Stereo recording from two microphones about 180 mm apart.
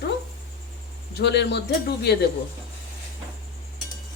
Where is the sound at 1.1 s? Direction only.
70° left (ahead or behind).